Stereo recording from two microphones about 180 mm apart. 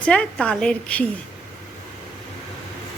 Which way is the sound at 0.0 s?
5° left (ahead or behind).